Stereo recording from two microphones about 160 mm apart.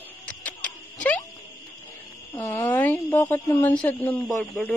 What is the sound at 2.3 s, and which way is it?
Speech, 15° left (ahead or behind).